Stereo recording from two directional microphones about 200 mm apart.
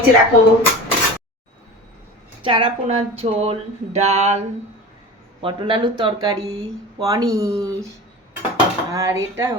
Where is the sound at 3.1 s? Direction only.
30° right (ahead or behind).